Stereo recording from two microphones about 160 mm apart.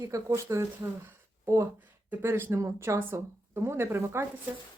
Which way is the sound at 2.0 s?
15° right (ahead or behind).